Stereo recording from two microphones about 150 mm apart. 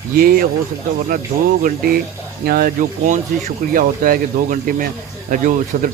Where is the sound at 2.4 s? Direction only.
85° right.